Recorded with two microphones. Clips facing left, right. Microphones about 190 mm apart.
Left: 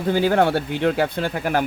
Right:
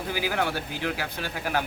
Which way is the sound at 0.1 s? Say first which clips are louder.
Left 11 dB; 60° left (ahead or behind).